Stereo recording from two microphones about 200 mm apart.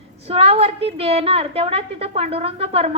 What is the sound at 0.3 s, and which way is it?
A woman's voice, 30° right (ahead or behind).